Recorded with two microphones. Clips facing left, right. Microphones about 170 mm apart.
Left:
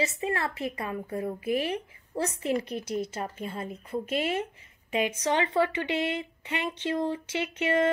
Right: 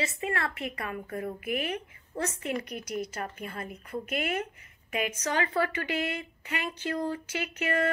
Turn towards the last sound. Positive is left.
turn(degrees=25)  # may be behind; listen again after turning